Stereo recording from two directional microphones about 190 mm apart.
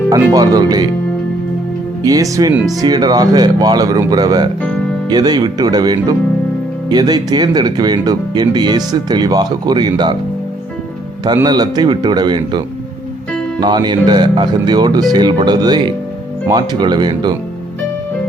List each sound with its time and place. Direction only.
0.1 s speech: 20° right (ahead or behind)
2.0 s speech: 20° right (ahead or behind)
4.6 s music: 5° left (ahead or behind)
5.0 s speech: 20° right (ahead or behind)
11.4 s speech: 20° right (ahead or behind)